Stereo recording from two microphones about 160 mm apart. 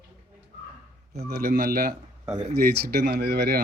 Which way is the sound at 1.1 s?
85° right.